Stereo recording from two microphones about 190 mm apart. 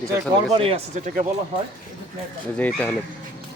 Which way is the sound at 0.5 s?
30° right (ahead or behind).